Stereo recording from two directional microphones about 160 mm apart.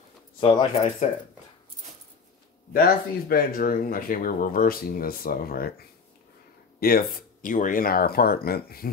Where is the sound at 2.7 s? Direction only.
65° left (ahead or behind).